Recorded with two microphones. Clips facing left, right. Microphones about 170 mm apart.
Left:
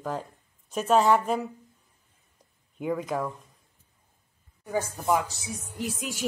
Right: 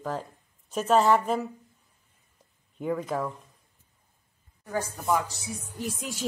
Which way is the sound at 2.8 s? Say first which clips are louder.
Even; 5° left (ahead or behind).